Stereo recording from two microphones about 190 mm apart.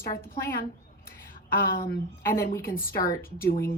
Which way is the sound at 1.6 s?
50° left (ahead or behind).